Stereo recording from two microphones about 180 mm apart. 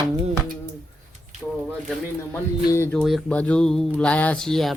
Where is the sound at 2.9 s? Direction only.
5° left (ahead or behind).